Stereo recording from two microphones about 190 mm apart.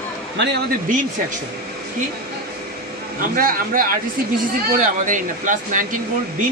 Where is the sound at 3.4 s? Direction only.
50° right (ahead or behind).